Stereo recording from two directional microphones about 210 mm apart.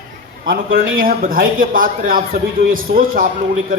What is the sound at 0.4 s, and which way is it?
A man's voice, 45° right (ahead or behind).